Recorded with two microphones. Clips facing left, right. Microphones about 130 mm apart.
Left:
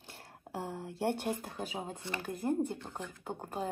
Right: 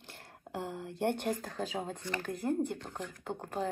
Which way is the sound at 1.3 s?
20° left (ahead or behind).